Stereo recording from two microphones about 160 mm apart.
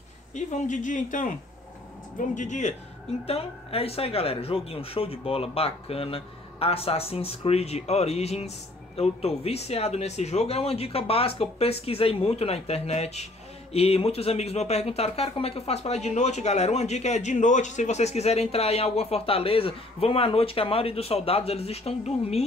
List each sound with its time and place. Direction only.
0.3 s speech: 50° left (ahead or behind)
3.3 s speech: 40° left (ahead or behind)